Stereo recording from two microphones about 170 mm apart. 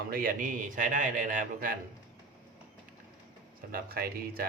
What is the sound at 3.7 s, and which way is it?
Speech, 60° right (ahead or behind).